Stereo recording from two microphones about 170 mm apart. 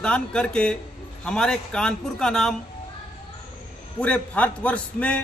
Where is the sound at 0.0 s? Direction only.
5° left (ahead or behind).